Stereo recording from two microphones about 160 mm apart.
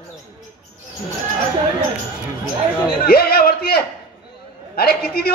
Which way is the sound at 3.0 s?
70° left (ahead or behind).